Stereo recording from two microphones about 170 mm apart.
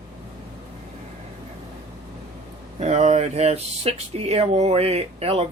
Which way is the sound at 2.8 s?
40° right (ahead or behind).